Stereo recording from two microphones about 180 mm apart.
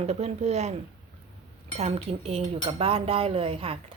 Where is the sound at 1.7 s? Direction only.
35° right (ahead or behind).